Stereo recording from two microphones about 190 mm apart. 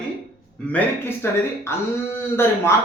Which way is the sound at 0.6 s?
5° left (ahead or behind).